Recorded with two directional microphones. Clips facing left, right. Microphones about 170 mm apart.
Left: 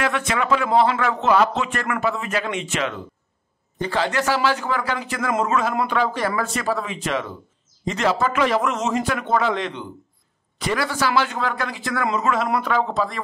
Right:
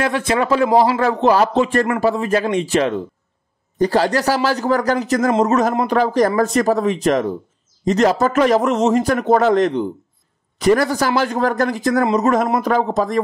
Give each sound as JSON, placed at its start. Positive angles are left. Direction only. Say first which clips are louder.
{"t": 0.0, "sound": "a man's voice", "louder": "right 5 dB", "side_deg": -30}